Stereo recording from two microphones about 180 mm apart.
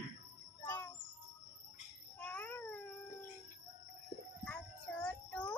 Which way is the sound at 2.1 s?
10° left (ahead or behind).